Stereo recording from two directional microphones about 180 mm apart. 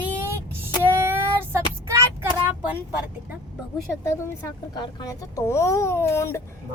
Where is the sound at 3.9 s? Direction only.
10° left (ahead or behind).